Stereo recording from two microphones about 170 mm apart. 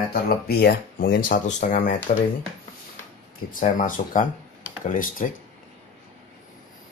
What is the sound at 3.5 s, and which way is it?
Speech, 50° left (ahead or behind).